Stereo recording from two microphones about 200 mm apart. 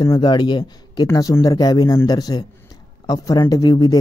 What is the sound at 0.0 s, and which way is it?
Speech, 20° left (ahead or behind).